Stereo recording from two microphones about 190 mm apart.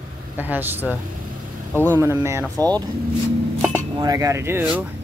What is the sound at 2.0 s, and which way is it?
Speech, 15° right (ahead or behind).